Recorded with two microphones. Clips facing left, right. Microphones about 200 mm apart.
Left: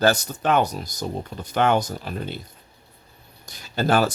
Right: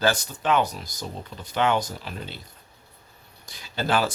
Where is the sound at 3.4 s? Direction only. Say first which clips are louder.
Left 5 dB; 45° left (ahead or behind).